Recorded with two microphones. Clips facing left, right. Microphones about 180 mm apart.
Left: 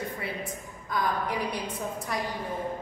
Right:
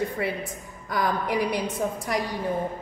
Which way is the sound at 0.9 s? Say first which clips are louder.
Right 4 dB; 80° right.